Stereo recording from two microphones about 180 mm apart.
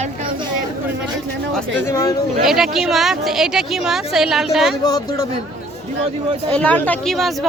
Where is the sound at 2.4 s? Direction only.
Centre (ahead or behind).